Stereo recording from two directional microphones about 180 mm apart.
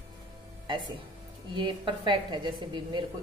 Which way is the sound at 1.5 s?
25° right (ahead or behind).